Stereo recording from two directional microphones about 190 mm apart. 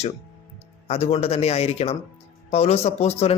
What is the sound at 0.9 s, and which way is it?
Speech, 30° left (ahead or behind).